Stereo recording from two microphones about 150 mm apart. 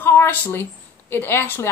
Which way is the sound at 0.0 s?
15° left (ahead or behind).